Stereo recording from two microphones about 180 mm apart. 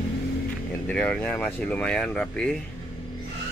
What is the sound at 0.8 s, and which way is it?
Speech, 5° left (ahead or behind).